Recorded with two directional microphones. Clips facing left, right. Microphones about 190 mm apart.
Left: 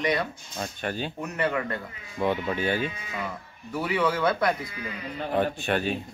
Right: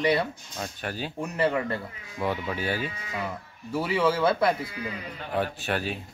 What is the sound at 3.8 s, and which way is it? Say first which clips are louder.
Speech: right 1 dB; 25° right (ahead or behind).